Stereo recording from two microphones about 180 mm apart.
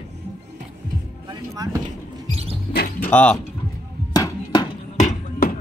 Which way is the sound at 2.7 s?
60° left (ahead or behind).